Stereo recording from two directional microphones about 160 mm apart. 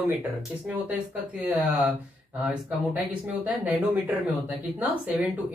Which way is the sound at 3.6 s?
10° right (ahead or behind).